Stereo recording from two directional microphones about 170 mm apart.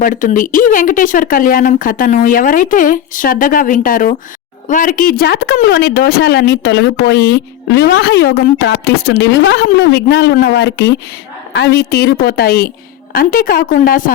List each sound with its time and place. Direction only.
0.0 s a woman's voice: 50° left (ahead or behind); by 10.9 s 85° left
11.5 s a woman's voice: 70° left (ahead or behind)